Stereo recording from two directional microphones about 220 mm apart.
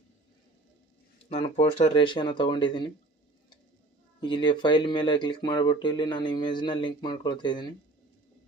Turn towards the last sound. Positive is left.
turn(degrees=20)  # may be behind; listen again after turning